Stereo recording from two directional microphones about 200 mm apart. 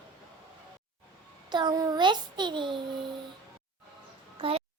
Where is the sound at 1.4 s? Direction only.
20° right (ahead or behind).